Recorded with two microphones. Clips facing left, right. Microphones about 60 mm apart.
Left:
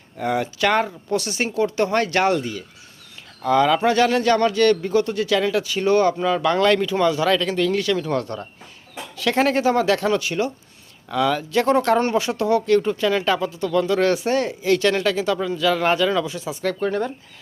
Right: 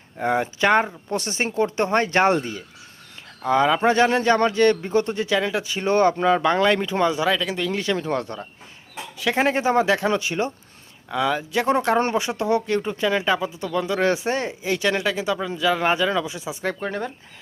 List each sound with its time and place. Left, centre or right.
0.2 s speech: right
7.3 s speech: centre
7.8 s speech: right